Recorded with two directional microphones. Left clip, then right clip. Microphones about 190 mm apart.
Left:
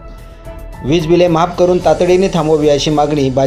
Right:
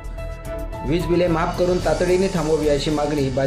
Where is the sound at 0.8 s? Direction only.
20° left (ahead or behind).